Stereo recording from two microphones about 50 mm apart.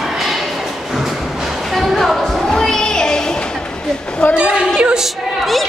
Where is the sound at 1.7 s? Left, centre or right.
Centre.